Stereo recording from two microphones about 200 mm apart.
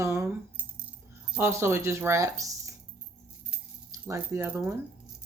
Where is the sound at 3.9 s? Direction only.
15° right (ahead or behind).